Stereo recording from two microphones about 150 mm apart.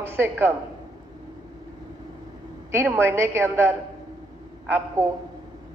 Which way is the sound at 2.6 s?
15° right (ahead or behind).